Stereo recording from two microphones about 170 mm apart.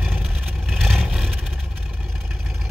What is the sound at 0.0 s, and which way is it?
Vehicle, 5° right (ahead or behind).